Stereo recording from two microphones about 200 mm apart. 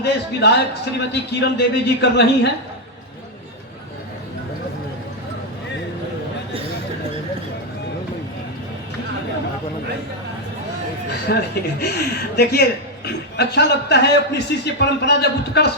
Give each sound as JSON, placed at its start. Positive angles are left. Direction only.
{"t": 0.0, "sound": "a man's voice", "side_deg": 55}
{"t": 11.3, "sound": "a man's voice", "side_deg": 55}